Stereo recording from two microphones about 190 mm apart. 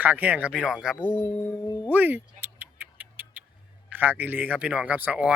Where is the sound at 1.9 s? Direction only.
10° right (ahead or behind).